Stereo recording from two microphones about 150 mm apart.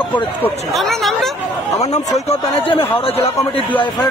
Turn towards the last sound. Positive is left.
turn(degrees=40)  # may be behind; listen again after turning